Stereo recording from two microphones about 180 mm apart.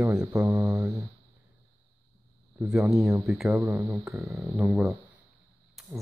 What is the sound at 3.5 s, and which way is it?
Speech, 15° right (ahead or behind).